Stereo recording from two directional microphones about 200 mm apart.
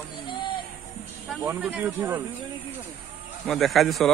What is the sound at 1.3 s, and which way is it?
Speech, 10° right (ahead or behind).